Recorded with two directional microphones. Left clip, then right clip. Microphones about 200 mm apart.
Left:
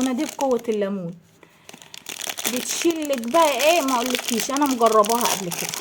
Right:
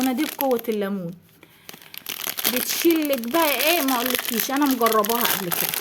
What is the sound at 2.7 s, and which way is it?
Speech, 20° right (ahead or behind).